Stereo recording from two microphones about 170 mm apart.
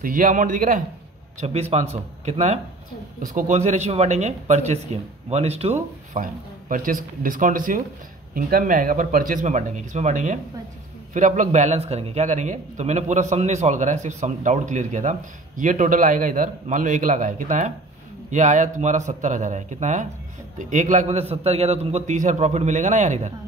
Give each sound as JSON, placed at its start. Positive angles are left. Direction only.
{"t": 0.0, "sound": "a man's voice", "side_deg": -50}
{"t": 1.4, "sound": "speech", "side_deg": -40}
{"t": 6.7, "sound": "a man's voice", "side_deg": -55}